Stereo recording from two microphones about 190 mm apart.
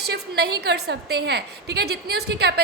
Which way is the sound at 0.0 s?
60° right (ahead or behind).